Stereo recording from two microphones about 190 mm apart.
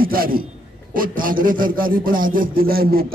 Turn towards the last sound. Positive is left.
turn(degrees=-50)  # may be behind; listen again after turning